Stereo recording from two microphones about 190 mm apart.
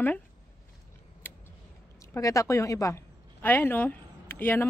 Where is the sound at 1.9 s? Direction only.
15° left (ahead or behind).